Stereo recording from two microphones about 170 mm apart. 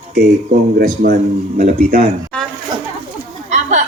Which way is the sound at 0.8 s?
60° right (ahead or behind).